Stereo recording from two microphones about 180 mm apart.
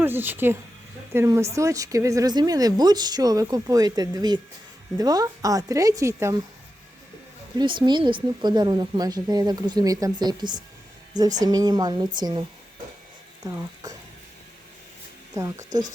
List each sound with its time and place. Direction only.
0.0 s speech: 10° right (ahead or behind)
7.6 s speech: 25° right (ahead or behind)
15.4 s speech: 20° right (ahead or behind)